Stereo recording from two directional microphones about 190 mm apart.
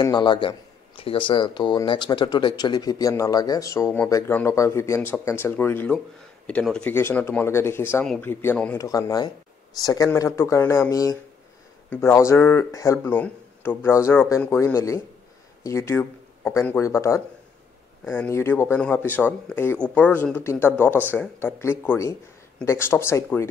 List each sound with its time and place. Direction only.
0.0 s speech: 20° left (ahead or behind)
8.8 s speech: 20° left (ahead or behind)